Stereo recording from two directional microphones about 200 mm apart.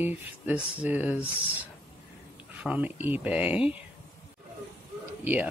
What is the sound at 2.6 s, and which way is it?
Speech, 5° right (ahead or behind).